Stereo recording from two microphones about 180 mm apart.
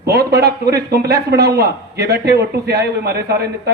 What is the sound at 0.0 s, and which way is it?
A man's voice, 60° right (ahead or behind).